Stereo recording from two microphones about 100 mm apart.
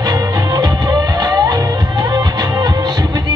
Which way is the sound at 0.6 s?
40° right (ahead or behind).